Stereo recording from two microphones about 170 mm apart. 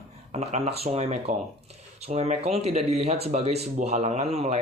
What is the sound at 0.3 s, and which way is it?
Speech, 40° right (ahead or behind).